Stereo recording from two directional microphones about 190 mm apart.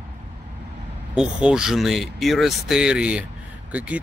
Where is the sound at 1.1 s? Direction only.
5° right (ahead or behind).